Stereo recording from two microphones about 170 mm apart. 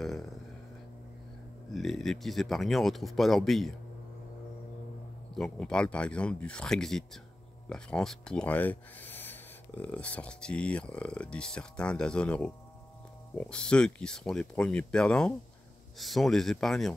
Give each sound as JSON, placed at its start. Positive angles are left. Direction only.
{"t": 0.0, "sound": "speech", "side_deg": 0}
{"t": 1.7, "sound": "speech", "side_deg": 0}
{"t": 5.3, "sound": "speech", "side_deg": 5}